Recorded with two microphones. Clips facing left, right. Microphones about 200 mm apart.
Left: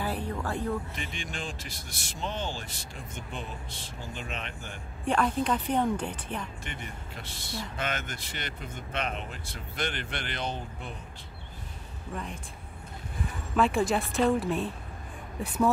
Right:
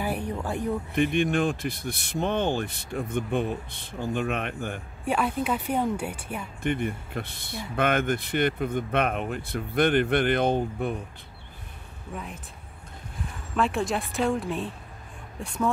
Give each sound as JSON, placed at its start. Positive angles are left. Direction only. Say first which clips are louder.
{"t": 0.0, "sound": "a sound", "louder": "right 3 dB", "side_deg": -15}
{"t": 0.9, "sound": "speech", "louder": "right 15 dB", "side_deg": -60}
{"t": 5.0, "sound": "speech", "louder": "even", "side_deg": -5}
{"t": 6.6, "sound": "speech", "louder": "right 13 dB", "side_deg": -55}
{"t": 12.1, "sound": "a woman's voice", "louder": "even", "side_deg": -5}
{"t": 13.6, "sound": "a woman's voice", "louder": "left 1 dB", "side_deg": 0}